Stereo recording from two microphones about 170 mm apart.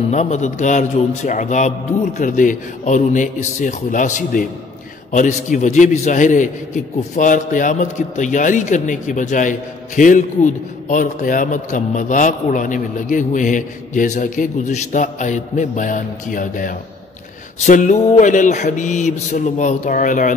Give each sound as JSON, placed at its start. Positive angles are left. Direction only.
{"t": 0.1, "sound": "a man's voice", "side_deg": 40}